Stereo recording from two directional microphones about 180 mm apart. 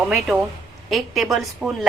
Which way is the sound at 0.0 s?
5° right (ahead or behind).